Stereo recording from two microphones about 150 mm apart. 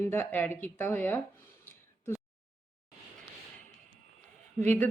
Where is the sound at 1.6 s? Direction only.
15° left (ahead or behind).